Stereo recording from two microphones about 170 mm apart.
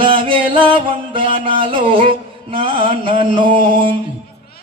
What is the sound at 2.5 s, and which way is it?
Music, 30° right (ahead or behind).